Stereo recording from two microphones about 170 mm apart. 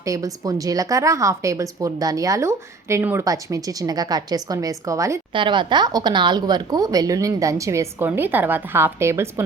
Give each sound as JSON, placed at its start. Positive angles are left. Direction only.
{"t": 0.0, "sound": "speech", "side_deg": -20}
{"t": 5.3, "sound": "speech", "side_deg": -30}